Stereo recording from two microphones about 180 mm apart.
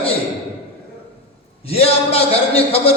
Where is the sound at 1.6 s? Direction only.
35° left (ahead or behind).